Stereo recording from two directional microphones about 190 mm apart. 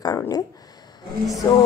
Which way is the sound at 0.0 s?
20° left (ahead or behind).